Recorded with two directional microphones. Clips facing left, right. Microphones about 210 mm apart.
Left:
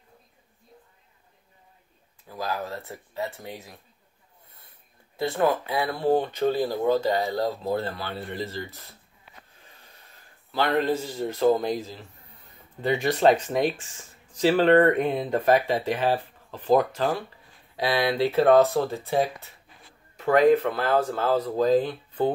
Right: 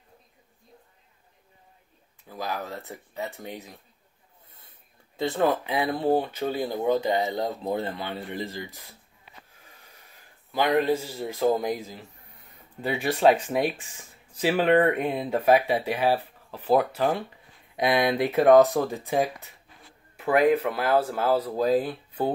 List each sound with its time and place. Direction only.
2.3 s speech: 15° right (ahead or behind)
5.1 s speech: 20° right (ahead or behind)
10.1 s a man's voice: 15° right (ahead or behind)
17.7 s speech: 20° right (ahead or behind)